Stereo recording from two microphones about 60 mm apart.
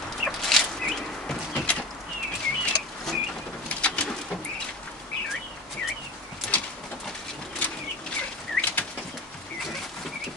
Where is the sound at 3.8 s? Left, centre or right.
Left.